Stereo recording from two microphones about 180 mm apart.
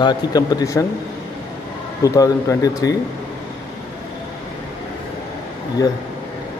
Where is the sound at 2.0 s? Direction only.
20° left (ahead or behind).